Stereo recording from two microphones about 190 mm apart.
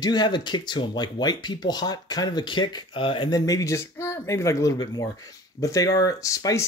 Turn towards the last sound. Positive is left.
turn(degrees=15)  # may be behind; listen again after turning